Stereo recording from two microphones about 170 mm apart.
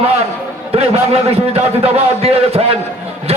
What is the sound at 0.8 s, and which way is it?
A man's voice, 35° right (ahead or behind).